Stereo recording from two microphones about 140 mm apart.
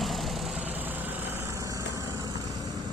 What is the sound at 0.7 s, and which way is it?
Vehicle, 15° right (ahead or behind).